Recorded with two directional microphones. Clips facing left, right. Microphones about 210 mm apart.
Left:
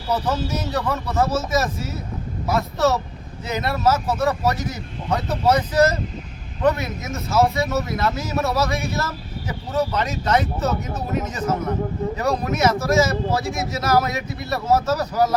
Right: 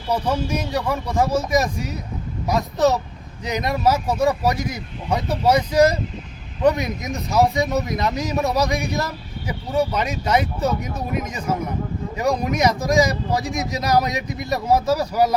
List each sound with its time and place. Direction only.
0.1 s a man's voice: 10° right (ahead or behind)